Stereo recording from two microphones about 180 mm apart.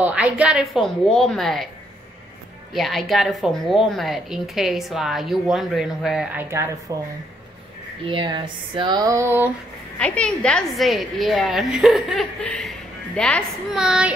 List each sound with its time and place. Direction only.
0.0 s a woman's voice: 5° right (ahead or behind)
2.7 s a woman's voice: centre (ahead or behind)
8.0 s a sound: 25° right (ahead or behind)
9.9 s a woman's voice: 5° left (ahead or behind)